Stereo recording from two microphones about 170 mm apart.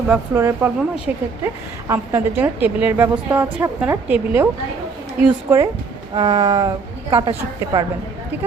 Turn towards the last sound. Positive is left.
turn(degrees=-25)  # may be behind; listen again after turning